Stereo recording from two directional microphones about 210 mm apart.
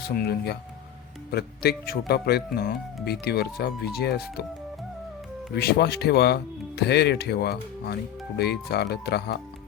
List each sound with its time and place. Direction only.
0.1 s speech: 50° left (ahead or behind)
5.5 s speech: 50° left (ahead or behind)